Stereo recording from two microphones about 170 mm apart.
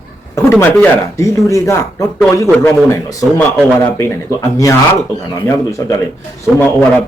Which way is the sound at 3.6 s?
10° left (ahead or behind).